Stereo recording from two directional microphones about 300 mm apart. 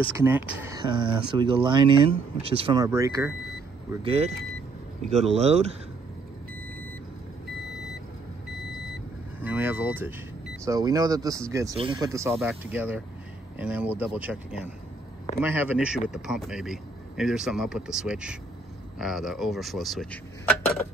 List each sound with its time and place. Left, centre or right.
0.1 s speech: centre
9.4 s vehicle: centre
10.6 s a man's voice: centre